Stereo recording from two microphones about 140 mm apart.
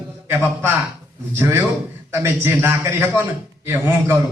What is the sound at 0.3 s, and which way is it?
A man's voice, 15° right (ahead or behind).